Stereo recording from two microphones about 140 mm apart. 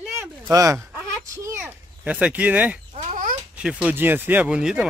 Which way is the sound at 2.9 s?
65° right (ahead or behind).